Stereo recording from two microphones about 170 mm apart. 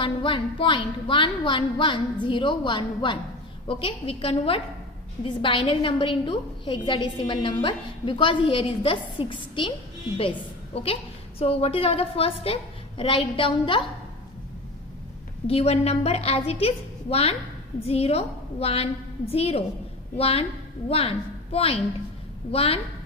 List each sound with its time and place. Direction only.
0.0 s a woman's voice: 30° left (ahead or behind)
11.3 s a woman's voice: 35° left (ahead or behind)
15.4 s a woman's voice: 35° left (ahead or behind)